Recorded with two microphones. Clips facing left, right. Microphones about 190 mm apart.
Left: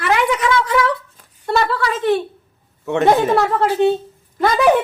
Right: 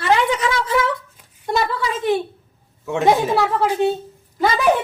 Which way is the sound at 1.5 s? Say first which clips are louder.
Left 3 dB; 15° right (ahead or behind).